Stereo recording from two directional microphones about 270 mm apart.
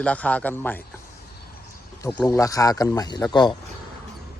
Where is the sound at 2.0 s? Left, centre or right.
Centre.